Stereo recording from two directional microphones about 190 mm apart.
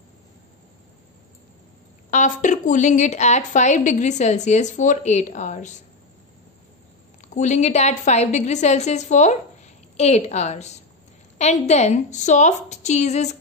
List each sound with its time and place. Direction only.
2.0 s a woman's voice: 40° left (ahead or behind)
7.3 s a woman's voice: 40° left (ahead or behind)